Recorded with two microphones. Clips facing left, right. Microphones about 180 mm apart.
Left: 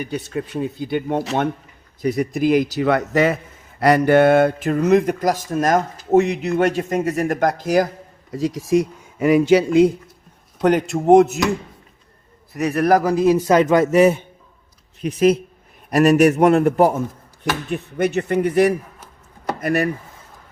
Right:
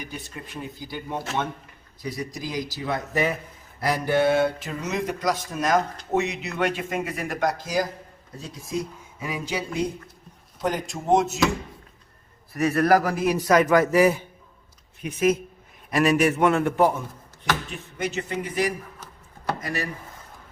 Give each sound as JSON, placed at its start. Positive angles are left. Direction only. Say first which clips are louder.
{"t": 0.0, "sound": "speech", "louder": "left 12 dB", "side_deg": 70}
{"t": 3.8, "sound": "speech", "louder": "left 9 dB", "side_deg": 70}
{"t": 8.3, "sound": "speech", "louder": "left 14 dB", "side_deg": 90}
{"t": 12.5, "sound": "a man's voice", "louder": "left 3 dB", "side_deg": 20}
{"t": 15.9, "sound": "a man's voice", "louder": "left 7 dB", "side_deg": 40}
{"t": 17.7, "sound": "speech", "louder": "left 10 dB", "side_deg": 55}